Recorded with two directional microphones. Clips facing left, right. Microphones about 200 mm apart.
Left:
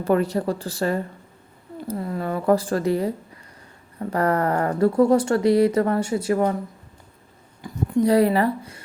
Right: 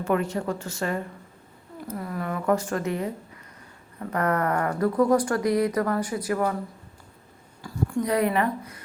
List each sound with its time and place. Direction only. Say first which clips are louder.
0.0 s speech: left 5 dB; 35° left (ahead or behind)
4.1 s speech: left 3 dB; 30° left (ahead or behind)
7.6 s a sound: left 6 dB; 20° left (ahead or behind)
8.1 s speech: left 4 dB; 30° left (ahead or behind)